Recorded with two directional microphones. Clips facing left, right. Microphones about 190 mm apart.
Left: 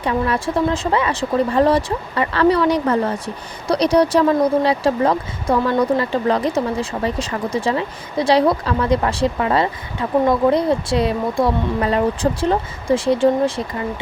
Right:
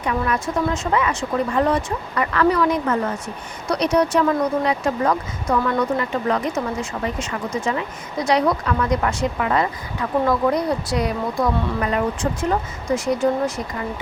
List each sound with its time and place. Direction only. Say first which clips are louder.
0.0 s speech: left 3 dB; 30° left (ahead or behind)